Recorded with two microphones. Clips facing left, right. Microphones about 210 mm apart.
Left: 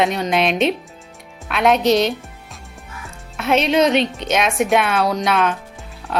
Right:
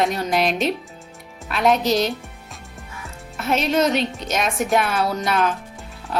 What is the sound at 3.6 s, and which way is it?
Speech, centre (ahead or behind).